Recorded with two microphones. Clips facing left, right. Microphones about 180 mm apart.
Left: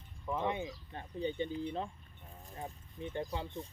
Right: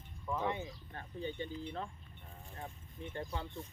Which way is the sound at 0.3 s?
20° left (ahead or behind).